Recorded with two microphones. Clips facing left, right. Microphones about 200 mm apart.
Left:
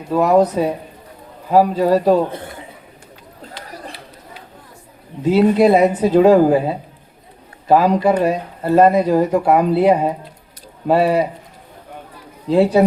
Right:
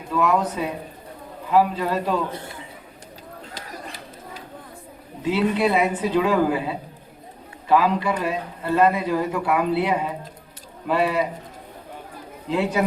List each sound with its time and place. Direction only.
0.1 s speech: 35° left (ahead or behind)
5.2 s speech: 40° left (ahead or behind)
12.5 s speech: 35° left (ahead or behind)